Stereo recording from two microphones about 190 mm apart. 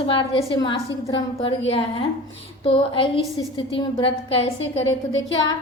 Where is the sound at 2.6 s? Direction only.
25° left (ahead or behind).